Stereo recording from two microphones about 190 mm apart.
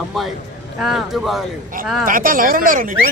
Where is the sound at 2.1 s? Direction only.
45° right (ahead or behind).